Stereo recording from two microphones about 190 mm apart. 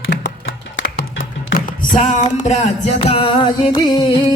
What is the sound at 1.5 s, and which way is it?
Music, 40° left (ahead or behind).